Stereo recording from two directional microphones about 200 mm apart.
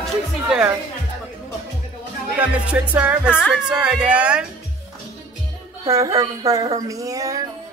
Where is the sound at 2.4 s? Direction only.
5° right (ahead or behind).